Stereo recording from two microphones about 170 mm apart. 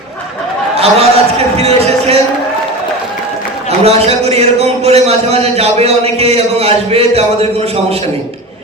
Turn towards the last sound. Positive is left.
turn(degrees=-40)  # may be behind; listen again after turning